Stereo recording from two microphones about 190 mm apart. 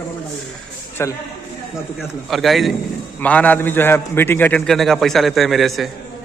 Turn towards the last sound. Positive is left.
turn(degrees=0)  # may be behind; listen again after turning